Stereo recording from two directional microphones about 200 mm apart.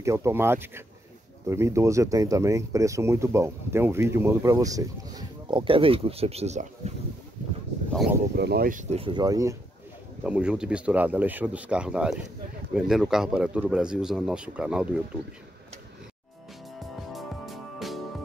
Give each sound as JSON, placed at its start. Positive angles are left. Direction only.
{"t": 0.0, "sound": "speech", "side_deg": -15}
{"t": 7.9, "sound": "speech", "side_deg": 0}
{"t": 8.4, "sound": "speech", "side_deg": -50}
{"t": 8.9, "sound": "speech", "side_deg": -25}
{"t": 10.2, "sound": "speech", "side_deg": -5}
{"t": 16.8, "sound": "music", "side_deg": 0}